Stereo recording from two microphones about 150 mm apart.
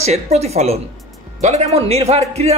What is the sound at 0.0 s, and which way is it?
A man's voice, 45° right (ahead or behind).